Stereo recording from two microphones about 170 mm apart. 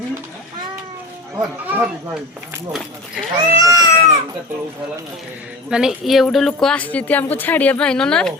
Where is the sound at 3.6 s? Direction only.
20° right (ahead or behind).